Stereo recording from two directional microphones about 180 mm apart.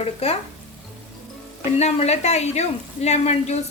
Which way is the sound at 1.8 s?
35° left (ahead or behind).